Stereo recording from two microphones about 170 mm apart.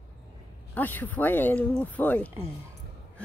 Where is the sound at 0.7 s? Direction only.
10° left (ahead or behind).